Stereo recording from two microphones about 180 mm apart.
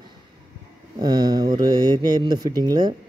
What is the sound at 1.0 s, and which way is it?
Speech, 20° right (ahead or behind).